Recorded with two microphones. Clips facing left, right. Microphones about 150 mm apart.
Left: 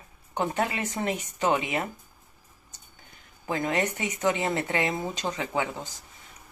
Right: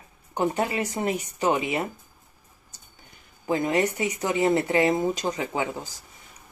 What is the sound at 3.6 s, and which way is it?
Speech, 10° right (ahead or behind).